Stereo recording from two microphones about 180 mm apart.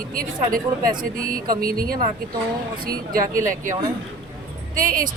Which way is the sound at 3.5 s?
45° right (ahead or behind).